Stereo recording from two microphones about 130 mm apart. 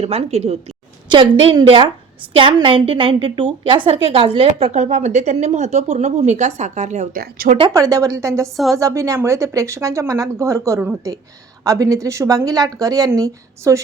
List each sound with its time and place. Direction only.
0.0 s a woman's voice: 55° right (ahead or behind)
1.1 s a woman's voice: 40° right (ahead or behind)
4.7 s speech: 70° right (ahead or behind)
7.7 s speech: 25° right (ahead or behind)